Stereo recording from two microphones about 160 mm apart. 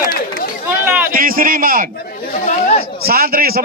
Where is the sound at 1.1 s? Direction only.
60° right (ahead or behind).